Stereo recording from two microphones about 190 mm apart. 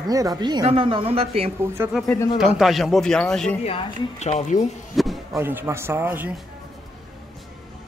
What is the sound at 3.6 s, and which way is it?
Speech, 30° left (ahead or behind).